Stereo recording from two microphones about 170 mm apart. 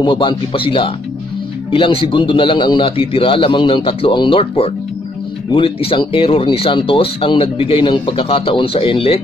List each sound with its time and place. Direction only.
0.0 s speech: 30° left (ahead or behind)